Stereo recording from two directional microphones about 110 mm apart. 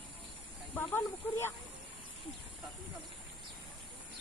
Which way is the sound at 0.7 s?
15° left (ahead or behind).